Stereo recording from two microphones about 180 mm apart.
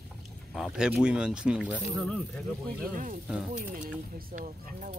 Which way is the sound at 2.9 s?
50° right (ahead or behind).